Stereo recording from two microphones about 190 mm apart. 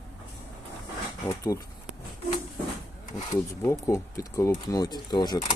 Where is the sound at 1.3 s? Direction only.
20° left (ahead or behind).